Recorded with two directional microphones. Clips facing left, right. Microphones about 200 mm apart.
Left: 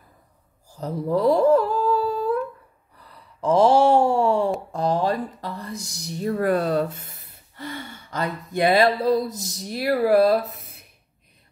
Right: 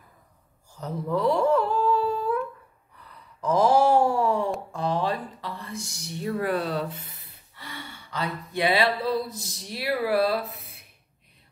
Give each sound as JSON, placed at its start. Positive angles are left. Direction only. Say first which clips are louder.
{"t": 0.7, "sound": "humming", "louder": "left 4 dB", "side_deg": 35}
{"t": 3.0, "sound": "a sound", "louder": "left 5 dB", "side_deg": 30}
{"t": 4.7, "sound": "speech", "louder": "left 4 dB", "side_deg": 40}